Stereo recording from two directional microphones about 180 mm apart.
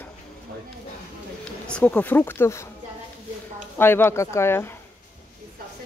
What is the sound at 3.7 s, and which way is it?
Speech, 10° left (ahead or behind).